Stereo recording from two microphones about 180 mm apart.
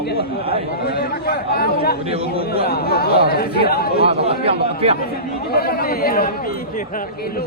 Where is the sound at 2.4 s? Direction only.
60° left (ahead or behind).